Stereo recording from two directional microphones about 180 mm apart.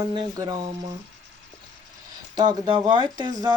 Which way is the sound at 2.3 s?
20° right (ahead or behind).